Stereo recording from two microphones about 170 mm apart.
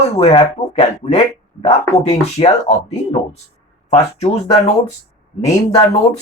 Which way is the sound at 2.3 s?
40° left (ahead or behind).